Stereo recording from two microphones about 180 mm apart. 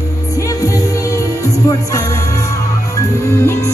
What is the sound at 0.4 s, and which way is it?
Music, 15° left (ahead or behind).